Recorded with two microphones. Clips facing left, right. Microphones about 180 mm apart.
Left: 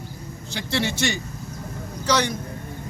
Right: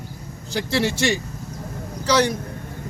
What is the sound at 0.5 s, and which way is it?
Speech, 35° right (ahead or behind).